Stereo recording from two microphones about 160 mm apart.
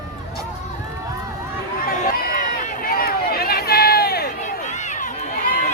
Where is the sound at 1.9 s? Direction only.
60° left (ahead or behind).